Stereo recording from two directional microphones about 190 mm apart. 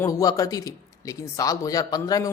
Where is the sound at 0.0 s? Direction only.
20° left (ahead or behind).